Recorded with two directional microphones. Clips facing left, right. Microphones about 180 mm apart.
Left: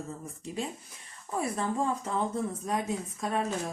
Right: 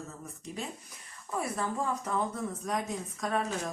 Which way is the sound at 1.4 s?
30° left (ahead or behind).